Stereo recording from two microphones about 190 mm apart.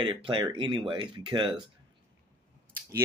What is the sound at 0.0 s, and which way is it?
Speech, 25° right (ahead or behind).